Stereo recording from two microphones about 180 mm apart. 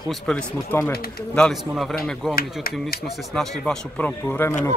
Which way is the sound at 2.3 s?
55° left (ahead or behind).